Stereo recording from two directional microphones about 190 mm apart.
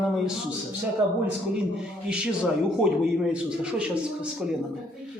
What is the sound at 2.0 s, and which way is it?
Speech, 5° right (ahead or behind).